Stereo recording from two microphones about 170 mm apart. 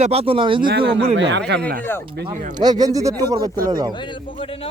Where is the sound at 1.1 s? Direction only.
90° right.